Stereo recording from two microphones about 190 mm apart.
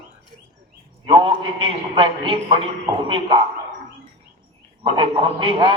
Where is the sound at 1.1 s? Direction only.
25° right (ahead or behind).